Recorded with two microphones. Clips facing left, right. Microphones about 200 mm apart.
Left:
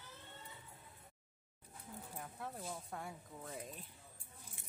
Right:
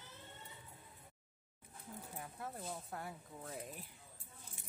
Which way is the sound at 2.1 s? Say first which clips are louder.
Even; centre (ahead or behind).